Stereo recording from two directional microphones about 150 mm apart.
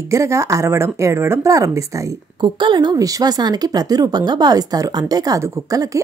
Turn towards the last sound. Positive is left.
turn(degrees=-25)  # may be behind; listen again after turning